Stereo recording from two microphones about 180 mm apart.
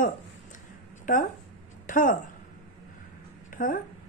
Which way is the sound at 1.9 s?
45° left (ahead or behind).